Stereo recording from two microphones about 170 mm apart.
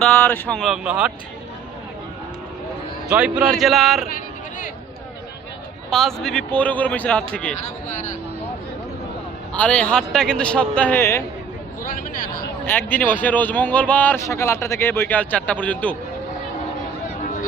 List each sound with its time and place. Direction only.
0.0 s a man's voice: 10° left (ahead or behind)
0.6 s speech: 5° right (ahead or behind)
3.1 s a man's voice: 10° right (ahead or behind)
5.9 s a man's voice: centre (ahead or behind)
7.9 s speech: 50° left (ahead or behind)
9.5 s a man's voice: 5° left (ahead or behind)
11.8 s speech: 55° left (ahead or behind)
12.6 s a man's voice: 10° left (ahead or behind)